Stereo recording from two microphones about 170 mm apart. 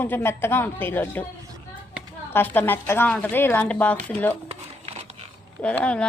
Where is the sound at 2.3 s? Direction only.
10° left (ahead or behind).